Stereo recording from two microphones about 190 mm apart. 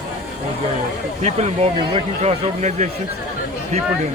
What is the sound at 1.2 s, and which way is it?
Speech, 35° right (ahead or behind).